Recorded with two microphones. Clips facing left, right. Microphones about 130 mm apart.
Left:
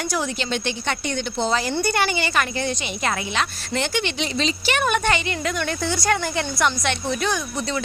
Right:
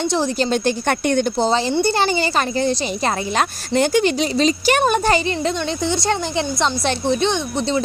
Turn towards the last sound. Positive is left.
turn(degrees=-30)  # may be behind; listen again after turning